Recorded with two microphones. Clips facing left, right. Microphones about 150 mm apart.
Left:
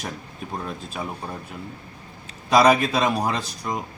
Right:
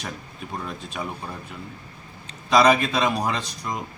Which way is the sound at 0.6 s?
5° left (ahead or behind).